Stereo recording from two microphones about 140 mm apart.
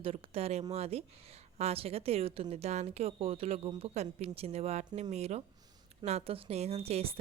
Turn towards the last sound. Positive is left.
turn(degrees=-45)  # may be behind; listen again after turning